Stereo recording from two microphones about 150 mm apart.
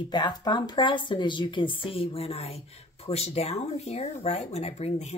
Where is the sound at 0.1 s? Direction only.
30° left (ahead or behind).